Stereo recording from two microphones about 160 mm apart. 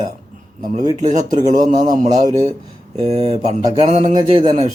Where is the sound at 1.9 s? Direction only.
55° right (ahead or behind).